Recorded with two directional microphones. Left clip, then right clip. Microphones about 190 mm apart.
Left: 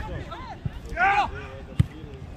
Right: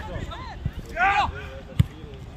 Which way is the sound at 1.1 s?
50° left (ahead or behind).